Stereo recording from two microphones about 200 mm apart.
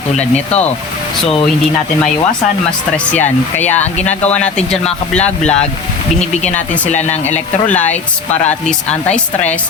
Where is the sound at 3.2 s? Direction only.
35° left (ahead or behind).